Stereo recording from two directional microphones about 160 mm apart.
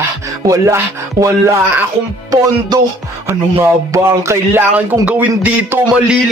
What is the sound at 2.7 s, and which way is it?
Speech, 25° right (ahead or behind).